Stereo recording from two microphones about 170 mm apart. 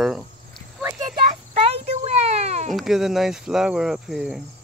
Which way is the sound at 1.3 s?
35° right (ahead or behind).